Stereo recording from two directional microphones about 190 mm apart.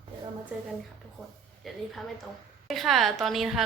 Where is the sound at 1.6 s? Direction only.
Centre (ahead or behind).